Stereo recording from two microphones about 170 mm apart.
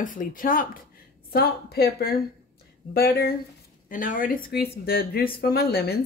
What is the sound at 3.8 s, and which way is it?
A woman's voice, 50° left (ahead or behind).